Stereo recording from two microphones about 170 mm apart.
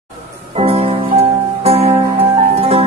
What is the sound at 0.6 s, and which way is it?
Music, 35° right (ahead or behind).